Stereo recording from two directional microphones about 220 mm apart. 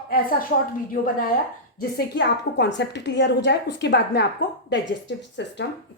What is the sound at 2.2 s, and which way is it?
A woman's voice, 50° left (ahead or behind).